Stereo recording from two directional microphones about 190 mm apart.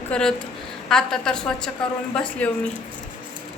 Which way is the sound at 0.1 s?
5° left (ahead or behind).